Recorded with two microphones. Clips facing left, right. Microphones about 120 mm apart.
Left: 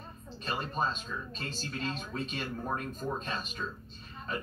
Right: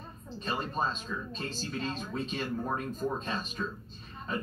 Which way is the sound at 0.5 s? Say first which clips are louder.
Right 1 dB; centre (ahead or behind).